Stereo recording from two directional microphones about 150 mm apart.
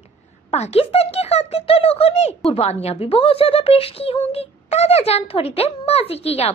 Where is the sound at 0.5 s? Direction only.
45° left (ahead or behind).